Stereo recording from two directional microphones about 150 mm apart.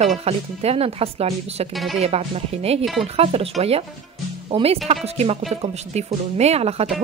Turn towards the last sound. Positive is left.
turn(degrees=-45)  # may be behind; listen again after turning